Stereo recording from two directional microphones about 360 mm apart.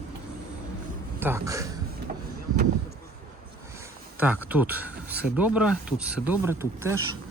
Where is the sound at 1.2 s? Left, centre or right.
Centre.